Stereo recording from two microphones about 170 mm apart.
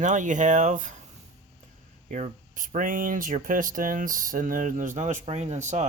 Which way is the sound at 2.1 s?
45° right (ahead or behind).